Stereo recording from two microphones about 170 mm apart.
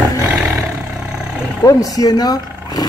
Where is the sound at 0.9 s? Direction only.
5° right (ahead or behind).